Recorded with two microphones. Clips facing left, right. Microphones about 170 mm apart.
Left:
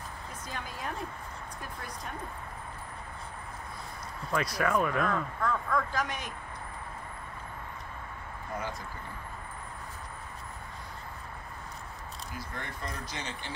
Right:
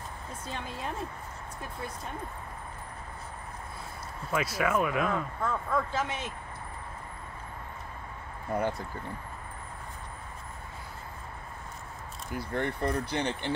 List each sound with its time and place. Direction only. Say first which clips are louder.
0.5 s speech: right 2 dB; 25° right (ahead or behind)
4.3 s speech: right 1 dB; 5° right (ahead or behind)
5.4 s speech: even; 25° right (ahead or behind)
8.5 s speech: right 8 dB; 60° right (ahead or behind)
12.3 s speech: right 11 dB; 60° right (ahead or behind)